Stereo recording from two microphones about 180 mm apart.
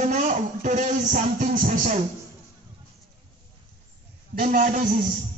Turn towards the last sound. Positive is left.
turn(degrees=-45)  # may be behind; listen again after turning